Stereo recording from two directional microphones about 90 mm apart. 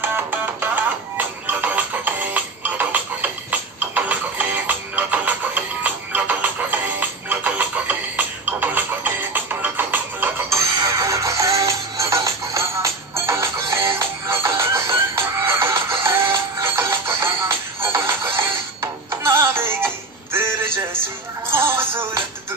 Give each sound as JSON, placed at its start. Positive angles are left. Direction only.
{"t": 0.0, "sound": "music", "side_deg": -25}
{"t": 10.8, "sound": "music", "side_deg": -35}
{"t": 20.3, "sound": "a sound", "side_deg": -25}